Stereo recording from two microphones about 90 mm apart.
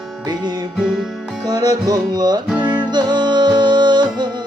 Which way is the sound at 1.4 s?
45° right (ahead or behind).